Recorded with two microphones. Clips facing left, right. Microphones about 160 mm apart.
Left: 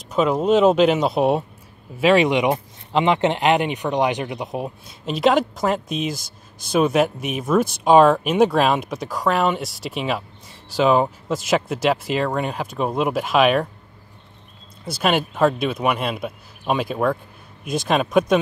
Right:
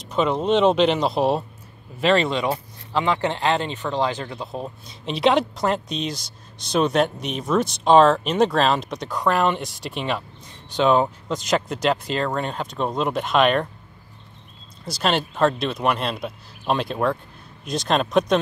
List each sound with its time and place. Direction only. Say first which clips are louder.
0.1 s speech: left 3 dB; 5° left (ahead or behind)
15.0 s speech: left 2 dB; 5° left (ahead or behind)